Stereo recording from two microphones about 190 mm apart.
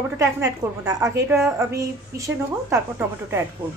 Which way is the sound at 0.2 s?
15° right (ahead or behind).